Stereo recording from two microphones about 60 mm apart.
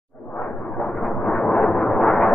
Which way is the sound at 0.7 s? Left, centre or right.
Centre.